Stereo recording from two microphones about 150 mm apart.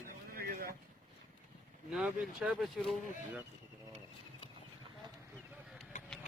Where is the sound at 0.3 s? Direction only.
75° right (ahead or behind).